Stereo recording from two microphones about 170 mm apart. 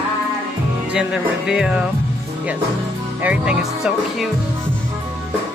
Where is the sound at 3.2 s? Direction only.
5° right (ahead or behind).